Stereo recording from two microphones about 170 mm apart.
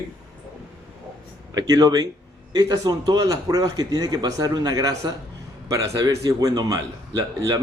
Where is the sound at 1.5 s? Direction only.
25° right (ahead or behind).